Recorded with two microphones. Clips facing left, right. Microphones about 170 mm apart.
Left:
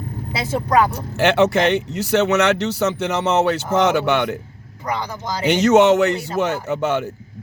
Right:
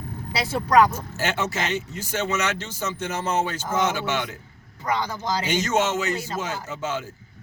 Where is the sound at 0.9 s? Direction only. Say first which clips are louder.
Left 9 dB; 65° left (ahead or behind).